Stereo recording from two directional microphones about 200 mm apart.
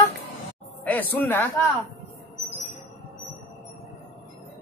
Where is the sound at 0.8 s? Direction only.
10° left (ahead or behind).